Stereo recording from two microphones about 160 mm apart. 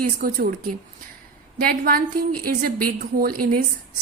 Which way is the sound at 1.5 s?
65° right (ahead or behind).